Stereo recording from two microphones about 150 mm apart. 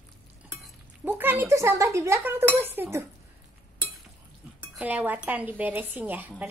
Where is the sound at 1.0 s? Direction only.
10° right (ahead or behind).